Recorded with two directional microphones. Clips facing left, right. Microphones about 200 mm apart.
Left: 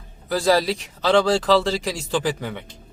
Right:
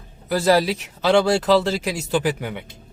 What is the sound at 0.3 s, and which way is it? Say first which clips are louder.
A man's voice: right 1 dB; 5° right (ahead or behind).